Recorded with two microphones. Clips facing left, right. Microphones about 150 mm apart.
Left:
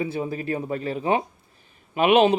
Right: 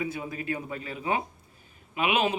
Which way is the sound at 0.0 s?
30° left (ahead or behind).